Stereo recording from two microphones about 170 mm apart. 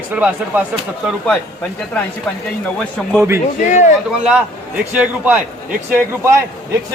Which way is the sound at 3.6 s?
45° left (ahead or behind).